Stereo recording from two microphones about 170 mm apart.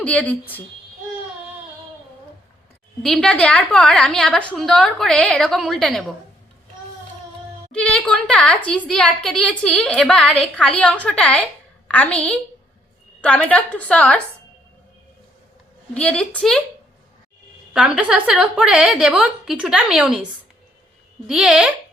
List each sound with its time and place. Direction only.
0.0 s a woman's voice: 10° left (ahead or behind)
3.0 s a woman's voice: centre (ahead or behind)
7.7 s a woman's voice: 5° left (ahead or behind)
16.0 s a woman's voice: 5° left (ahead or behind)
17.7 s a woman's voice: 5° right (ahead or behind)
21.2 s a woman's voice: 5° right (ahead or behind)